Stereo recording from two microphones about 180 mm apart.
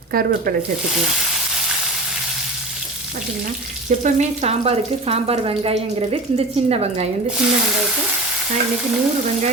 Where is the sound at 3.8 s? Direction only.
40° right (ahead or behind).